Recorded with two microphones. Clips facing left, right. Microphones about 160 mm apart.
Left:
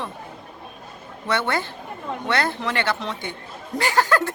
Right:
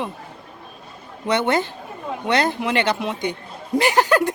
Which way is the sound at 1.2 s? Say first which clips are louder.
Right 4 dB; 20° right (ahead or behind).